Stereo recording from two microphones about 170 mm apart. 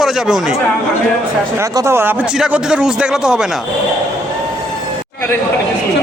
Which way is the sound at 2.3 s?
5° right (ahead or behind).